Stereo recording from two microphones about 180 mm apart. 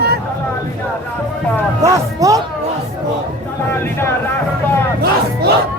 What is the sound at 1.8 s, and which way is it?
Speech, 20° right (ahead or behind).